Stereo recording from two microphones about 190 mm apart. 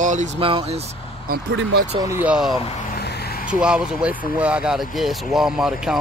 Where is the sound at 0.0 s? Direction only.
40° right (ahead or behind).